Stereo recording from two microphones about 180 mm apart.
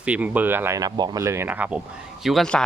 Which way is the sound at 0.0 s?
10° right (ahead or behind).